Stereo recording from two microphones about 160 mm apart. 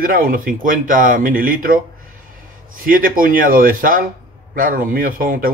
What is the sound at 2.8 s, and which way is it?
A man's voice, 60° right (ahead or behind).